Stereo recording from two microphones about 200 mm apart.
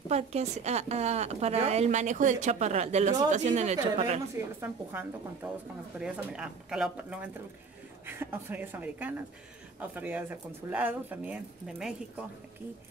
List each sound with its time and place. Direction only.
0.1 s speech: 30° right (ahead or behind)
4.6 s speech: 10° right (ahead or behind)